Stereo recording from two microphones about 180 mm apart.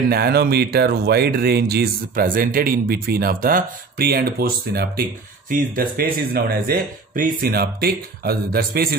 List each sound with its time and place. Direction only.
0.1 s speech: 60° right (ahead or behind)